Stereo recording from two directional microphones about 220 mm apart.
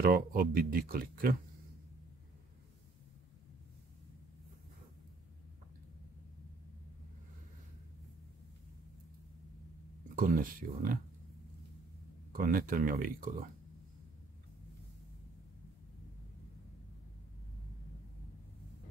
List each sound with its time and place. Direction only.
0.0 s speech: 40° right (ahead or behind)
10.1 s speech: 40° right (ahead or behind)
12.3 s speech: 40° right (ahead or behind)